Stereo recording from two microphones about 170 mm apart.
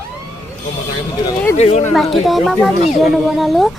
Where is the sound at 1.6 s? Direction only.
40° left (ahead or behind).